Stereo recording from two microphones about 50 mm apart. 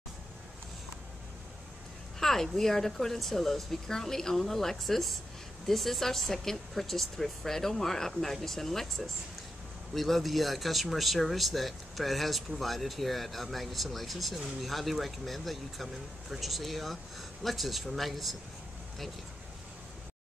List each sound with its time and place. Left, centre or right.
2.1 s speech: centre